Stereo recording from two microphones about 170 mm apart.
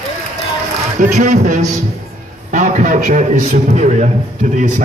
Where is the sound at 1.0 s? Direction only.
45° right (ahead or behind).